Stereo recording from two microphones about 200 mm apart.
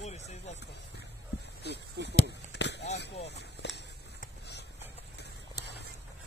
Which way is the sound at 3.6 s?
55° left (ahead or behind).